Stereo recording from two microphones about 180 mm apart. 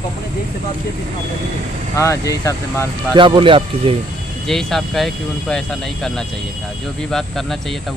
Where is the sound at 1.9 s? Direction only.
15° left (ahead or behind).